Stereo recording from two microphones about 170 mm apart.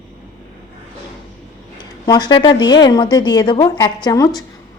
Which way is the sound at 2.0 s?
25° left (ahead or behind).